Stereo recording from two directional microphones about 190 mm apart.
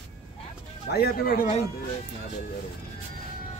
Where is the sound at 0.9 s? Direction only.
55° left (ahead or behind).